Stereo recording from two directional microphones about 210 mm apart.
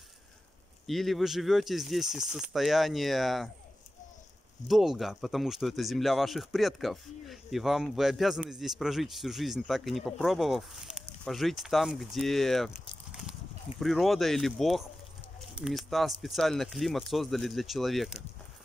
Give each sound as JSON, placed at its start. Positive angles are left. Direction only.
{"t": 0.8, "sound": "speech", "side_deg": 0}
{"t": 4.6, "sound": "speech", "side_deg": 0}